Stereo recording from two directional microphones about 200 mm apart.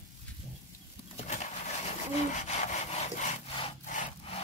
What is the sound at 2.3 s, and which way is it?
Wood, 35° left (ahead or behind).